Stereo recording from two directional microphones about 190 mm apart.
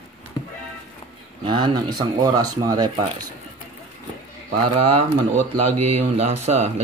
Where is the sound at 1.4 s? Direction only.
25° right (ahead or behind).